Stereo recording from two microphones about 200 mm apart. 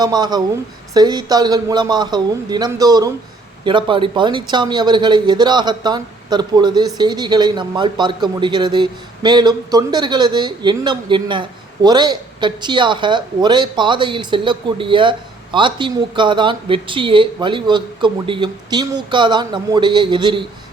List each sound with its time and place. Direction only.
0.0 s a man's voice: 20° right (ahead or behind)